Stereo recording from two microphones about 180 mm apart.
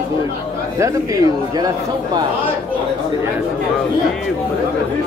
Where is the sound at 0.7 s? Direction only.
20° right (ahead or behind).